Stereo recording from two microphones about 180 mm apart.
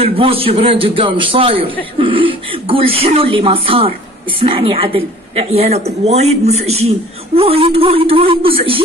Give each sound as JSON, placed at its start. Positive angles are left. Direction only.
{"t": 0.0, "sound": "a man's voice", "side_deg": -30}